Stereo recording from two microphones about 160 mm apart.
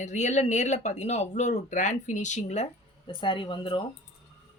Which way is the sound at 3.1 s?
30° left (ahead or behind).